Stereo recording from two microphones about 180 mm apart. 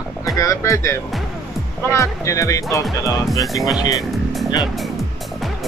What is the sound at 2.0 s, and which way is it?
Speech, 15° left (ahead or behind).